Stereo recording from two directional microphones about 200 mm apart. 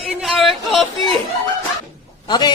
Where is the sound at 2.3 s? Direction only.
20° left (ahead or behind).